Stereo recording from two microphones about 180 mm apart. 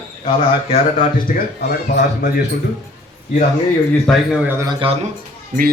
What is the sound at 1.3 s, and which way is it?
Speech, 50° left (ahead or behind).